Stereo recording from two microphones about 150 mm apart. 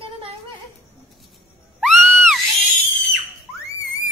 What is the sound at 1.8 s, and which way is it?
Screaming, centre (ahead or behind).